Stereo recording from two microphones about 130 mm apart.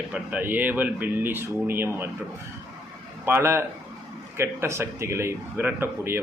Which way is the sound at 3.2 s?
20° right (ahead or behind).